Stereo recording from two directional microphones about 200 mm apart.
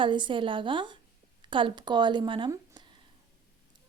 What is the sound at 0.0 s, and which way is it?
A woman's voice, 25° right (ahead or behind).